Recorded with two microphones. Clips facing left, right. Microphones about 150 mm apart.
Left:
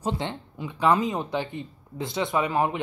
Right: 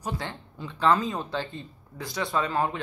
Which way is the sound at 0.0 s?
25° left (ahead or behind).